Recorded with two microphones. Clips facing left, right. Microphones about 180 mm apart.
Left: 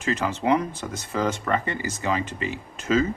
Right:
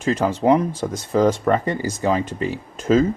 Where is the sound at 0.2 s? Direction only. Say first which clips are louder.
Right 6 dB; 40° right (ahead or behind).